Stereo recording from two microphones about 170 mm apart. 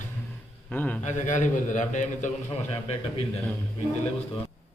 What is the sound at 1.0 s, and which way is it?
A man's voice, 45° left (ahead or behind).